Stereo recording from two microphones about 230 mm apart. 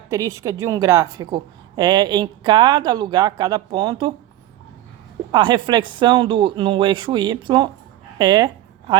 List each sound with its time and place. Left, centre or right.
0.1 s a woman's voice: centre
5.3 s a woman's voice: centre